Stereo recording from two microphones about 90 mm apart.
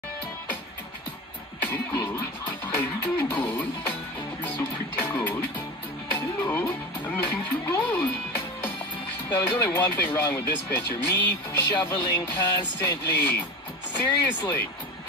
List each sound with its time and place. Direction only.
1.9 s speech: 30° left (ahead or behind)
4.5 s music: 20° left (ahead or behind)
9.3 s speech: 20° left (ahead or behind)